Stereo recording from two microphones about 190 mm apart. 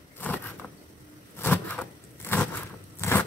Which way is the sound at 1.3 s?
10° left (ahead or behind).